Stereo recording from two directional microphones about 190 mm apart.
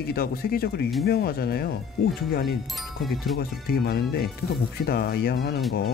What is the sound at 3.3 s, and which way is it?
Speech, 55° left (ahead or behind).